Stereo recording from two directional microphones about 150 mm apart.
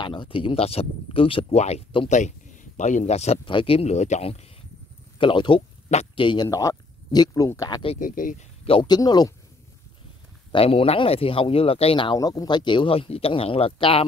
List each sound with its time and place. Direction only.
0.0 s speech: 35° left (ahead or behind)
2.0 s speech: 55° left (ahead or behind)
3.4 s speech: 35° left (ahead or behind)
5.2 s speech: 35° left (ahead or behind)
5.9 s speech: 45° left (ahead or behind)
6.2 s speech: 30° left (ahead or behind)
8.0 s speech: 60° left (ahead or behind)
8.6 s speech: 30° left (ahead or behind)
10.5 s speech: 40° left (ahead or behind)